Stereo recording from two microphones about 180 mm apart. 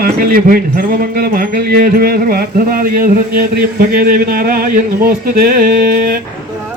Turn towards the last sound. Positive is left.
turn(degrees=-55)  # may be behind; listen again after turning